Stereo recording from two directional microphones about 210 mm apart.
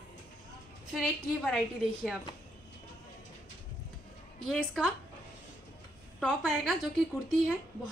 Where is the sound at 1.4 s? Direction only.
Centre (ahead or behind).